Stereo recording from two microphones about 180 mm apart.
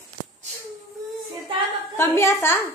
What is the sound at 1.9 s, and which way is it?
Speech, 15° left (ahead or behind).